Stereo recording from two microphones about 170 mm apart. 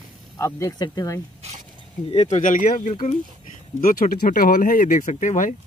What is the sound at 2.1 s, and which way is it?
Speech, 40° left (ahead or behind).